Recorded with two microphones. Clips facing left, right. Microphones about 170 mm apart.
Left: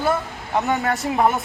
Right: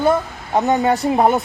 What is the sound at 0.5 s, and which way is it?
Speech, 35° right (ahead or behind).